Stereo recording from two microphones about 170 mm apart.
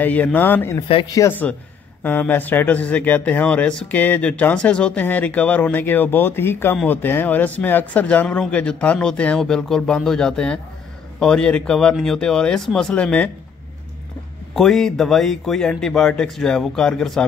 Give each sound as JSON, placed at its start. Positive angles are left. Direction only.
{"t": 0.0, "sound": "speech", "side_deg": 10}
{"t": 0.7, "sound": "speech", "side_deg": 25}
{"t": 1.1, "sound": "speech", "side_deg": 15}
{"t": 14.5, "sound": "speech", "side_deg": 0}